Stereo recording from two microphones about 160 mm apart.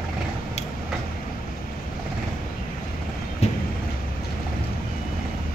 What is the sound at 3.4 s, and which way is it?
Vehicle, 45° left (ahead or behind).